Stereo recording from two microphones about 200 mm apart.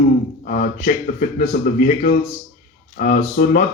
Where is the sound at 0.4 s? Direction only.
40° left (ahead or behind).